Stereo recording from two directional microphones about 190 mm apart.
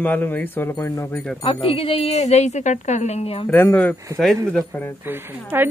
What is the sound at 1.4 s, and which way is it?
A woman's voice, 30° left (ahead or behind).